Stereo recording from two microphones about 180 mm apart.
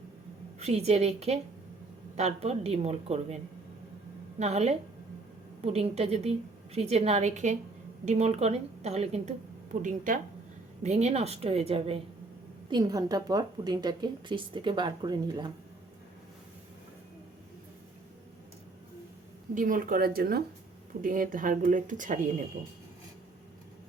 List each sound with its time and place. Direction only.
0.6 s a woman's voice: 35° right (ahead or behind)
4.4 s a woman's voice: 35° right (ahead or behind)
12.7 s a woman's voice: 20° right (ahead or behind)
19.5 s speech: 50° right (ahead or behind)